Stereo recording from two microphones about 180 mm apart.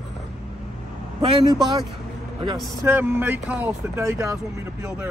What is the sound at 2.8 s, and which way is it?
Speech, 10° right (ahead or behind).